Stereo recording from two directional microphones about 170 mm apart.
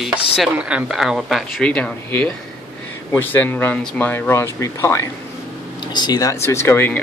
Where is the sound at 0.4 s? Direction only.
5° right (ahead or behind).